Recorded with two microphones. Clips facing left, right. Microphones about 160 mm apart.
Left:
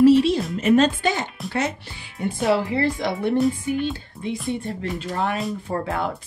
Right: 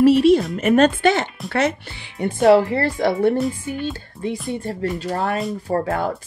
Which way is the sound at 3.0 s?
55° right (ahead or behind).